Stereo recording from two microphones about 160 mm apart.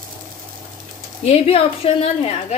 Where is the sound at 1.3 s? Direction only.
40° left (ahead or behind).